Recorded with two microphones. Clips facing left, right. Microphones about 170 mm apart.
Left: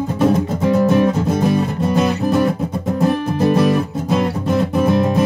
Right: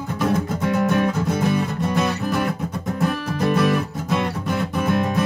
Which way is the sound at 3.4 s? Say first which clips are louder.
Left 4 dB; 30° left (ahead or behind).